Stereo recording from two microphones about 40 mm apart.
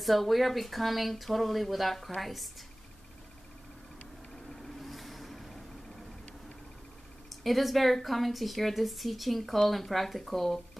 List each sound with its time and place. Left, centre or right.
0.0 s speech: centre
4.5 s vehicle: centre
7.4 s speech: centre